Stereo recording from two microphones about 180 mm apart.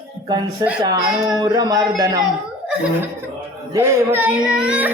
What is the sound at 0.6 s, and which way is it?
Speech, 20° right (ahead or behind).